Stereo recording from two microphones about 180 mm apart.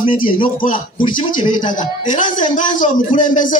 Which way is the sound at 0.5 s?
50° left (ahead or behind).